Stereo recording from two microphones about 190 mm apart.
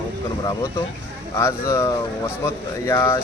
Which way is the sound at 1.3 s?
15° left (ahead or behind).